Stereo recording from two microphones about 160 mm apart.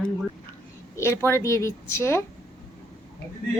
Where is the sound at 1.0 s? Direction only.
15° left (ahead or behind).